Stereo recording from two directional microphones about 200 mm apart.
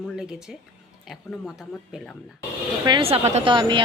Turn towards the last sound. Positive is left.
turn(degrees=-25)  # may be behind; listen again after turning